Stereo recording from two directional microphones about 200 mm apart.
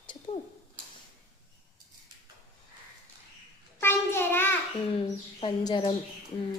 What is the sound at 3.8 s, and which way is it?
Child singing, 10° left (ahead or behind).